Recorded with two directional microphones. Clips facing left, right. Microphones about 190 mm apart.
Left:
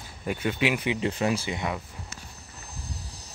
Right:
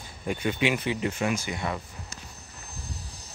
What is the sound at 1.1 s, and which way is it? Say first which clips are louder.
Speech: left 2 dB; 30° left (ahead or behind).